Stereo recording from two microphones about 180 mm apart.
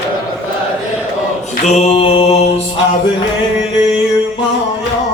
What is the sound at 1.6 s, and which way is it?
Mantra, 40° left (ahead or behind).